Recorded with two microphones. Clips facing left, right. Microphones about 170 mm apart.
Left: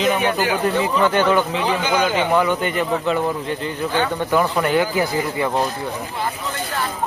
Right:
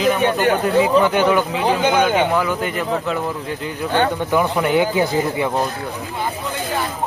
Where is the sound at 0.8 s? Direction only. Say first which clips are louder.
Right 4 dB; 10° right (ahead or behind).